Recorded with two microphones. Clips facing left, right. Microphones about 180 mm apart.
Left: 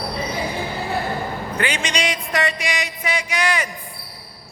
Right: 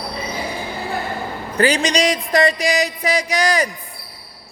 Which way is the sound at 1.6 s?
35° right (ahead or behind).